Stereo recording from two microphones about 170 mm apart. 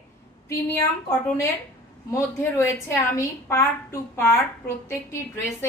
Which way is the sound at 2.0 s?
15° left (ahead or behind).